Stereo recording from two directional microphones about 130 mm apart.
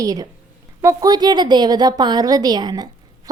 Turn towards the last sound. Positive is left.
turn(degrees=-30)  # may be behind; listen again after turning